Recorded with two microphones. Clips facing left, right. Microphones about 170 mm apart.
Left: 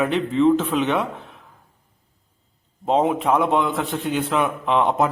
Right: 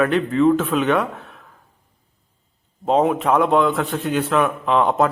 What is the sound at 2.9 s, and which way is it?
A man's voice, 15° left (ahead or behind).